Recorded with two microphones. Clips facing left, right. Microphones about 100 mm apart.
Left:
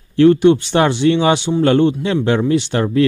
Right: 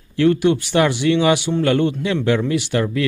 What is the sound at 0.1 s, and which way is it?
A man's voice, 30° left (ahead or behind).